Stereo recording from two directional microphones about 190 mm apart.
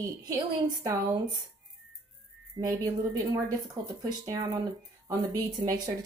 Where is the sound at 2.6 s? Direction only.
25° right (ahead or behind).